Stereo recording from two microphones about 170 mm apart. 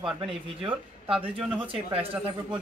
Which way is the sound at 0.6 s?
30° right (ahead or behind).